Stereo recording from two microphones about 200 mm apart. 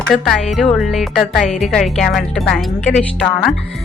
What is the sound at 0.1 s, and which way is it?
A woman's voice, centre (ahead or behind).